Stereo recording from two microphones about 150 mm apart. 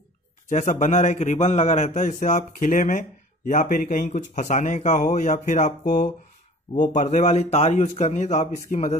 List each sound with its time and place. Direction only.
0.5 s a man's voice: 55° left (ahead or behind)